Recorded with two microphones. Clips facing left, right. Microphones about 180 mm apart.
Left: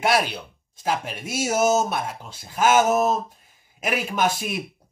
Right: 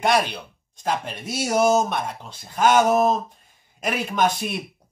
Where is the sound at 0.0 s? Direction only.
5° left (ahead or behind).